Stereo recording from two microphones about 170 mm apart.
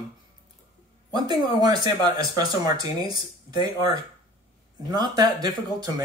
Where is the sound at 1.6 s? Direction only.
25° right (ahead or behind).